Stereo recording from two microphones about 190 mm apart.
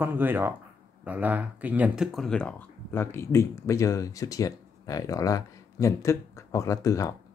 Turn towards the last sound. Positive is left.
turn(degrees=15)  # may be behind; listen again after turning